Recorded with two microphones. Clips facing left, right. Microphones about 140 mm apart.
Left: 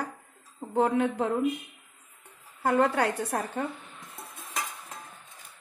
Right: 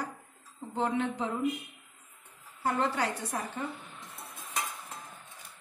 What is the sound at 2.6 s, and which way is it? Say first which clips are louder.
A woman's voice: left 6 dB; 60° left (ahead or behind).